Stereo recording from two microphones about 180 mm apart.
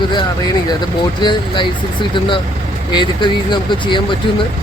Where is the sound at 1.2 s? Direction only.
25° left (ahead or behind).